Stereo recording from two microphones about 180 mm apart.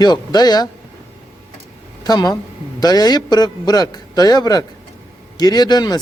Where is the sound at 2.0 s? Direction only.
20° left (ahead or behind).